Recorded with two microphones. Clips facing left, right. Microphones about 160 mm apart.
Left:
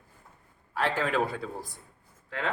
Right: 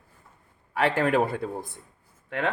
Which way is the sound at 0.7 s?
60° right (ahead or behind).